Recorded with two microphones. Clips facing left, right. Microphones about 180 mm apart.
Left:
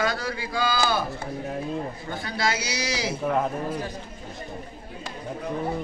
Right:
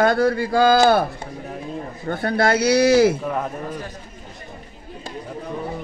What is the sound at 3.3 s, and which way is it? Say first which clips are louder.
Speech: left 1 dB; 5° left (ahead or behind).